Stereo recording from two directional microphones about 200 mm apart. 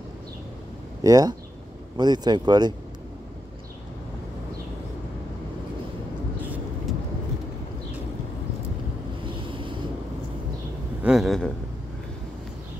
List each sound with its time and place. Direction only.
1.0 s speech: 20° right (ahead or behind)
6.4 s vehicle: 5° right (ahead or behind)
9.2 s boat: 25° right (ahead or behind)
11.0 s speech: centre (ahead or behind)